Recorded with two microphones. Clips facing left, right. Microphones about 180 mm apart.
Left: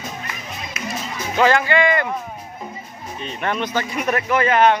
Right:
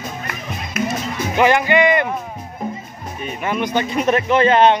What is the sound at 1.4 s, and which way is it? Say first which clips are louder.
Speech: right 2 dB; 15° right (ahead or behind).